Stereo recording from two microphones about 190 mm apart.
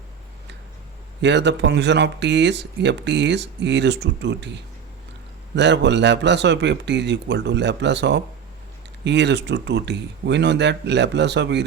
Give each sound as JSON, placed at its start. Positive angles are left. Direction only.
{"t": 1.2, "sound": "speech", "side_deg": -65}